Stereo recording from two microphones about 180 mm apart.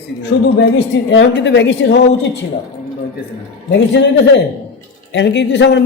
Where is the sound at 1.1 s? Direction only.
85° left.